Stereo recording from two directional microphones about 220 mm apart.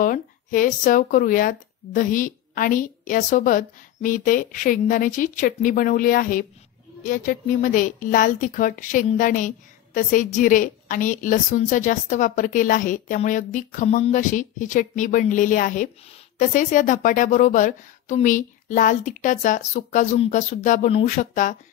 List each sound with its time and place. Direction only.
0.0 s speech: 35° left (ahead or behind)